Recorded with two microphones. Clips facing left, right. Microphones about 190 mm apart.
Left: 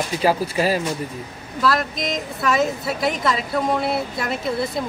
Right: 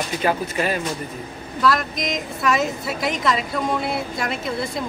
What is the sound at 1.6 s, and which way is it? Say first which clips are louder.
A woman's voice: even; centre (ahead or behind).